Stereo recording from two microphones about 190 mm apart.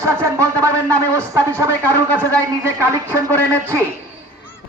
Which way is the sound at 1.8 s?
10° left (ahead or behind).